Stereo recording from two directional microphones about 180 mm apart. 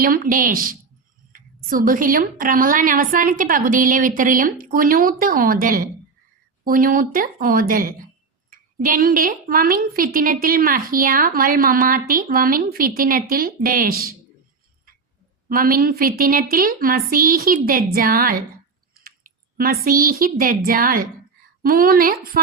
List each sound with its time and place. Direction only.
0.0 s a woman's voice: 50° right (ahead or behind)
15.4 s a woman's voice: 55° right (ahead or behind)